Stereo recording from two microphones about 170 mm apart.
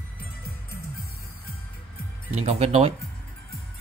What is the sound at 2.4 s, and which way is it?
Speech, 35° right (ahead or behind).